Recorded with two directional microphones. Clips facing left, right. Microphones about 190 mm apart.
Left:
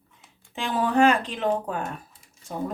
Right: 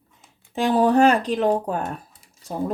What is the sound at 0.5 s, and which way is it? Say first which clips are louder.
Speech: right 6 dB; 40° right (ahead or behind).